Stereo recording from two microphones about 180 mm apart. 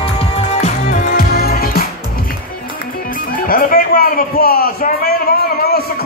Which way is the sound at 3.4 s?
55° left (ahead or behind).